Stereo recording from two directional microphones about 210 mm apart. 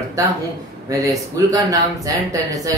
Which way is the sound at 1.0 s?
15° right (ahead or behind).